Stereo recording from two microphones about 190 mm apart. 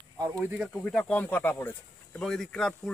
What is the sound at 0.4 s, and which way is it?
Speech, 5° right (ahead or behind).